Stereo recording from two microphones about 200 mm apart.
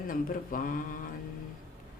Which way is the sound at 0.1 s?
40° left (ahead or behind).